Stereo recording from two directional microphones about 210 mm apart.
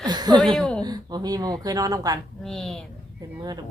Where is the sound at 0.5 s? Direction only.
5° left (ahead or behind).